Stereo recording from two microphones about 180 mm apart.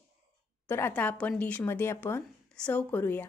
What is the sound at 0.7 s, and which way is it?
A woman's voice, 10° left (ahead or behind).